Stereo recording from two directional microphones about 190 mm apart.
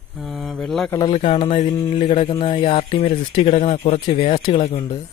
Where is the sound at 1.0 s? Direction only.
30° left (ahead or behind).